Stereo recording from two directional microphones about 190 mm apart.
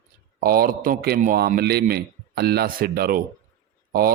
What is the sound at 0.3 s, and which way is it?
Speech, 50° right (ahead or behind).